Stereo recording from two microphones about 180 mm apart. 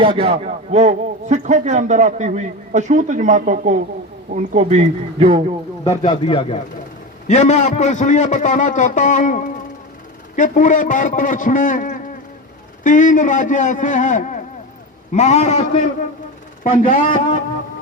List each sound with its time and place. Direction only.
0.0 s a man's voice: 30° right (ahead or behind)
6.1 s a man's voice: 30° left (ahead or behind)
7.3 s a man's voice: 40° left (ahead or behind)